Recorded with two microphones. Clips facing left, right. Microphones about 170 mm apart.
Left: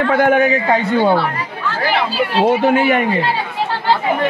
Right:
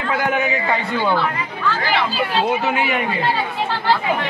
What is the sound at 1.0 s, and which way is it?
Speech, 30° left (ahead or behind).